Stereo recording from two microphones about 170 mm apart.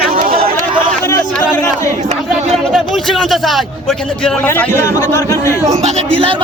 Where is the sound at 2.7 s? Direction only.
Centre (ahead or behind).